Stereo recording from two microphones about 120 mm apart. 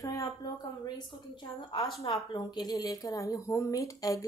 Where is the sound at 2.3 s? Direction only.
35° left (ahead or behind).